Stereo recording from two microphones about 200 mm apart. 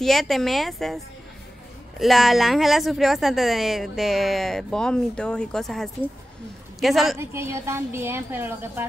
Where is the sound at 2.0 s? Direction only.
Centre (ahead or behind).